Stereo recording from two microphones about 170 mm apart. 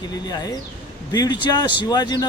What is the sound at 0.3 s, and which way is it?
Speech, 25° left (ahead or behind).